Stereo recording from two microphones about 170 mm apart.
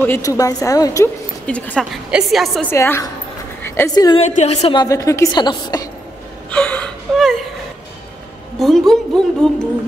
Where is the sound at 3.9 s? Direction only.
25° left (ahead or behind).